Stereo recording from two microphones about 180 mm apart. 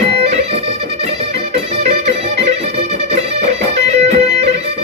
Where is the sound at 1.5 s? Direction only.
40° right (ahead or behind).